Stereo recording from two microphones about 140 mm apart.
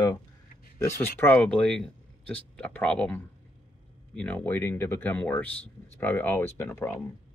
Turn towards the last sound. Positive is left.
turn(degrees=15)  # may be behind; listen again after turning